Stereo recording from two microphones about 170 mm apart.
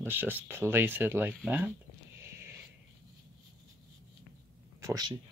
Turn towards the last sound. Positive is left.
turn(degrees=-20)  # may be behind; listen again after turning